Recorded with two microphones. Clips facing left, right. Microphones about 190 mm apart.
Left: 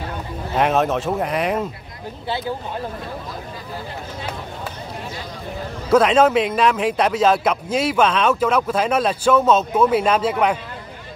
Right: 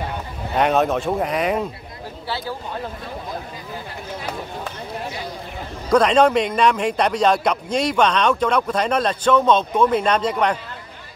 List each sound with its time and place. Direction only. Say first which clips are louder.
0.6 s a man's voice: even; centre (ahead or behind)
2.2 s speech: left 3 dB; 20° left (ahead or behind)
5.9 s a man's voice: left 1 dB; 5° left (ahead or behind)